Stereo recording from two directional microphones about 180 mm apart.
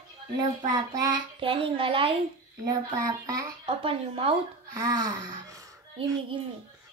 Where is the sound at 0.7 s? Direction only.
20° right (ahead or behind).